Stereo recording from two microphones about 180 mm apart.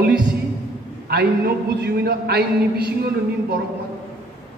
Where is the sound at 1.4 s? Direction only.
65° right (ahead or behind).